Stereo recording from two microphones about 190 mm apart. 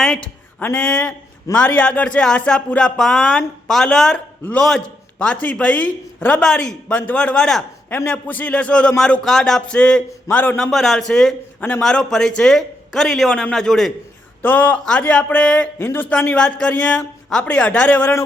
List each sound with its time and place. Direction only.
0.0 s speech: 5° left (ahead or behind)